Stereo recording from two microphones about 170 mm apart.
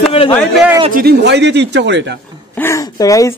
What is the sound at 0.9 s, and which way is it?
Speech, 75° right (ahead or behind).